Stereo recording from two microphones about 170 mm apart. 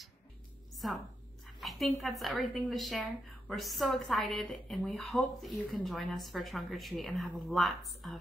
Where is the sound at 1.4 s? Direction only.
Centre (ahead or behind).